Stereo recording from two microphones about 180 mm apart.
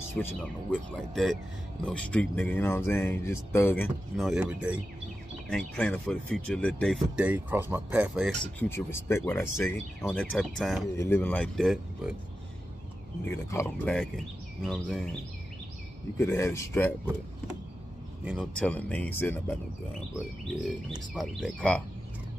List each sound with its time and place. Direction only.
0.2 s speech: 5° left (ahead or behind)
4.2 s speech: 5° right (ahead or behind)
5.5 s speech: 5° left (ahead or behind)
7.2 s speech: 10° right (ahead or behind)
8.5 s speech: 15° left (ahead or behind)
10.3 s speech: centre (ahead or behind)
11.0 s speech: 15° left (ahead or behind)
11.4 s speech: centre (ahead or behind)
13.2 s speech: 15° left (ahead or behind)
16.2 s speech: 15° left (ahead or behind)
18.2 s a man's voice: 5° right (ahead or behind)
18.6 s speech: 10° left (ahead or behind)
21.1 s speech: 5° left (ahead or behind)